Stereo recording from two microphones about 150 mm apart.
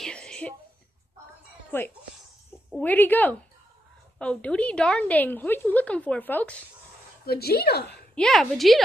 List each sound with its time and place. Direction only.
0.0 s a sound: 5° left (ahead or behind)
2.7 s a woman's voice: 10° left (ahead or behind)
7.2 s speech: 90° left
8.1 s a woman's voice: 5° left (ahead or behind)